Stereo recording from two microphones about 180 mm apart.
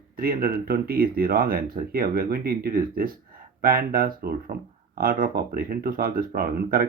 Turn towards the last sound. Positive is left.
turn(degrees=-55)  # may be behind; listen again after turning